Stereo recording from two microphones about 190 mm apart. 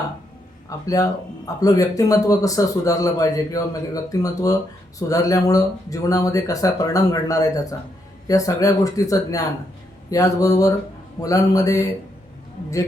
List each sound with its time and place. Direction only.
0.9 s speech: 20° left (ahead or behind)